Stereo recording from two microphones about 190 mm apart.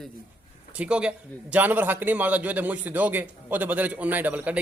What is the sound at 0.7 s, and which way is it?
A man's voice, 5° right (ahead or behind).